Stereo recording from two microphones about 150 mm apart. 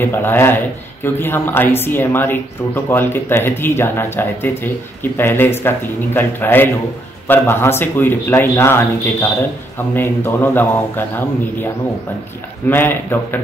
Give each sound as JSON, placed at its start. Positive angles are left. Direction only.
{"t": 0.0, "sound": "a man's voice", "side_deg": 15}